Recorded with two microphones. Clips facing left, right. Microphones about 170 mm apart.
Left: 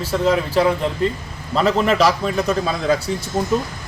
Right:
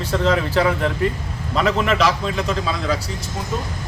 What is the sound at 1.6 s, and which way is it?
A man's voice, 35° left (ahead or behind).